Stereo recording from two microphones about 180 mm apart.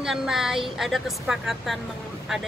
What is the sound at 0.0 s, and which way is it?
Speech, centre (ahead or behind).